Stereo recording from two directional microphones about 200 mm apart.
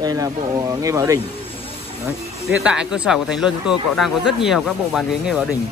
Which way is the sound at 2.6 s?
5° right (ahead or behind).